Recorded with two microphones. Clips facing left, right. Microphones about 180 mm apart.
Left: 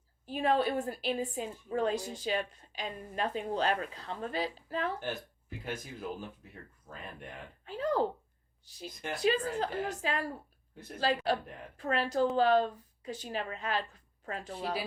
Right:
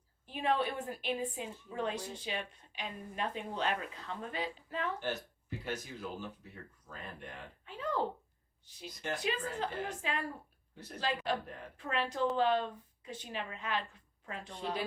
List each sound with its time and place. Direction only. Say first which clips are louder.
0.3 s a woman's voice: left 4 dB; 40° left (ahead or behind)
5.6 s speech: left 2 dB; 50° left (ahead or behind)
7.6 s speech: left 6 dB; 35° left (ahead or behind)
9.2 s a woman's voice: left 9 dB; 40° left (ahead or behind)